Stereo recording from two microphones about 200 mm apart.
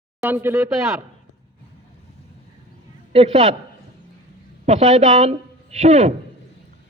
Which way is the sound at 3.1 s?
30° right (ahead or behind).